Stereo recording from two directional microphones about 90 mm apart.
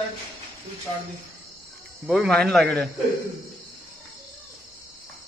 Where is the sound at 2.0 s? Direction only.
Centre (ahead or behind).